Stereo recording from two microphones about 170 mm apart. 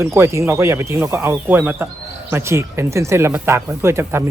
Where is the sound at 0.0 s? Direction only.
15° right (ahead or behind).